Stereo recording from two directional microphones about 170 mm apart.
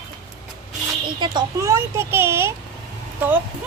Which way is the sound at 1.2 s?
25° right (ahead or behind).